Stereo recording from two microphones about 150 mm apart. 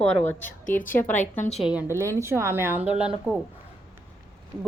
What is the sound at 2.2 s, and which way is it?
Speech, 15° right (ahead or behind).